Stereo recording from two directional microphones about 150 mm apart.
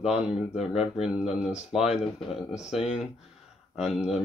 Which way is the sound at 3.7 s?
Centre (ahead or behind).